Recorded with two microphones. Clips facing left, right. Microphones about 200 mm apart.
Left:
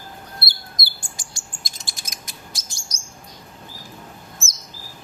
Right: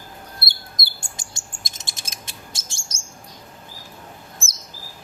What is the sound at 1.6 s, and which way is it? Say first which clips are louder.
Chirp: even; 25° right (ahead or behind).